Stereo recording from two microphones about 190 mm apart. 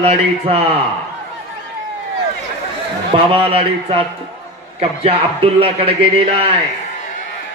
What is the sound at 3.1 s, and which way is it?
A man's voice, 30° right (ahead or behind).